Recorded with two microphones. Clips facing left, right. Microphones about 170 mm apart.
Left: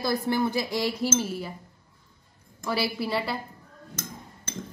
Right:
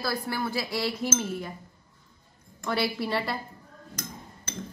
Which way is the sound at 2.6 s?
5° left (ahead or behind).